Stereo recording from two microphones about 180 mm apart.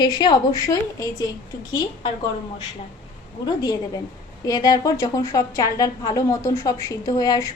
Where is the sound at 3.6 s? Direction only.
20° left (ahead or behind).